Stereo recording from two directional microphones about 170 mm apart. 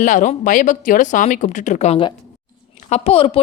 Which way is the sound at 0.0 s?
50° left (ahead or behind).